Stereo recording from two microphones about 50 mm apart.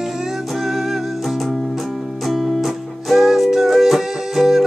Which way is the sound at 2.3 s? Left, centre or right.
Centre.